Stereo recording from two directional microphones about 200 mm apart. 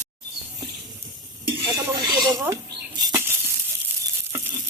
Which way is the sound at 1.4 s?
15° right (ahead or behind).